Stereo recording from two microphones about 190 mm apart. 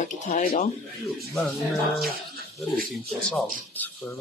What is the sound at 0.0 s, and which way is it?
Speech, 40° left (ahead or behind).